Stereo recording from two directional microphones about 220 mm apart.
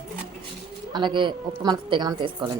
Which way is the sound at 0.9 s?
20° right (ahead or behind).